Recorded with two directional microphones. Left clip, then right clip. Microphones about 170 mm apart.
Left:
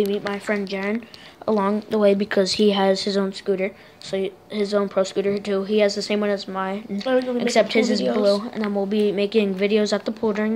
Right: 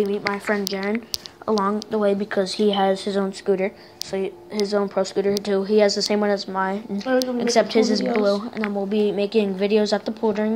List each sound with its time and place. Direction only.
0.5 s a woman's voice: 10° left (ahead or behind)
1.5 s speech: 25° left (ahead or behind)
3.4 s a woman's voice: 5° left (ahead or behind)
4.1 s a woman's voice: 15° left (ahead or behind)
5.4 s a woman's voice: centre (ahead or behind)
7.3 s a woman's voice: 10° left (ahead or behind)
7.8 s a woman's voice: 40° left (ahead or behind)
8.3 s a woman's voice: 10° left (ahead or behind)
8.7 s a woman's voice: 20° left (ahead or behind)